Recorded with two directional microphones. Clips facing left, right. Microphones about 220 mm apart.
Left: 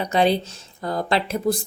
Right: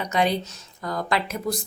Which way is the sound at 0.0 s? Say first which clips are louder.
Left 4 dB; 30° left (ahead or behind).